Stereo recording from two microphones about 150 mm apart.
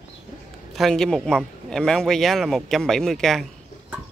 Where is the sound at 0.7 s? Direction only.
Centre (ahead or behind).